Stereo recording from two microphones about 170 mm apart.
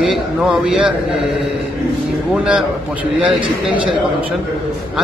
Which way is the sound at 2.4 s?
5° right (ahead or behind).